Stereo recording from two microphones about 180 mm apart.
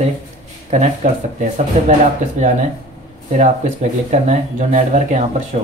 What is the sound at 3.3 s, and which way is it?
Speech, 40° right (ahead or behind).